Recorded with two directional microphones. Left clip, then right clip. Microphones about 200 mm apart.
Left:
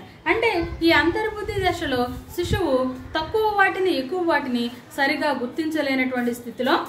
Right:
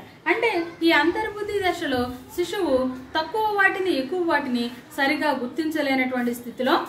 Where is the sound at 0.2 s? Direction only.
15° left (ahead or behind).